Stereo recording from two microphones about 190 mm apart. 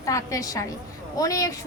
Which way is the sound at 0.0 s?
15° left (ahead or behind).